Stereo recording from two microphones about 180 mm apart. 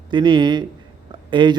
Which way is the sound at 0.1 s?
25° right (ahead or behind).